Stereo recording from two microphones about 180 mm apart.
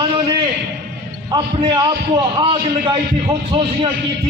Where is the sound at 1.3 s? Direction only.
25° right (ahead or behind).